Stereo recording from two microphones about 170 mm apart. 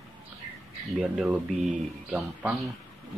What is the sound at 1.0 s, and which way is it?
Speech, 5° right (ahead or behind).